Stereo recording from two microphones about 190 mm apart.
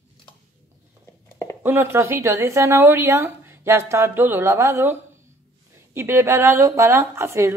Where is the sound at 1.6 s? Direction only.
10° right (ahead or behind).